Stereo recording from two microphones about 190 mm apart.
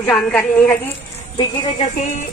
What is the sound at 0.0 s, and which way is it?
Speech, 10° left (ahead or behind).